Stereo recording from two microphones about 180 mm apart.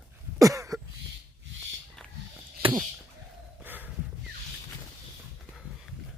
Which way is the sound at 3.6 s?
10° right (ahead or behind).